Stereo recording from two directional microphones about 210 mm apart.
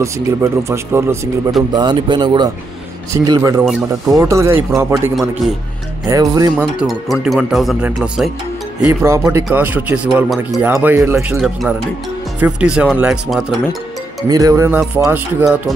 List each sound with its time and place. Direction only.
0.0 s speech: 15° right (ahead or behind)
6.8 s speech: centre (ahead or behind)
8.8 s speech: 15° right (ahead or behind)
11.3 s speech: centre (ahead or behind)
14.3 s speech: 15° right (ahead or behind)